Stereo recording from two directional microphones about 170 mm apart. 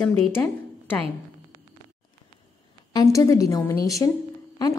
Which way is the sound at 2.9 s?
20° left (ahead or behind).